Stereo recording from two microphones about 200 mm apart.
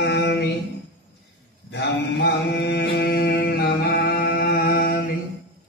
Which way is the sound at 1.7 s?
55° left (ahead or behind).